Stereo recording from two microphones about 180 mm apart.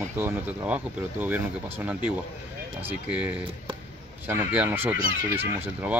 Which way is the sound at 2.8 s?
10° right (ahead or behind).